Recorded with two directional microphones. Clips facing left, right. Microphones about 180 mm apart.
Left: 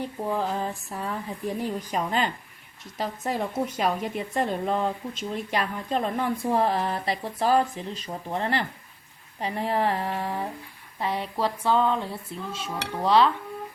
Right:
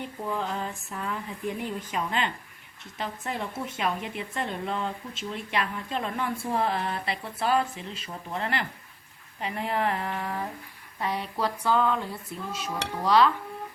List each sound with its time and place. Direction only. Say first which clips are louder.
0.2 s speech: left 3 dB; 40° left (ahead or behind)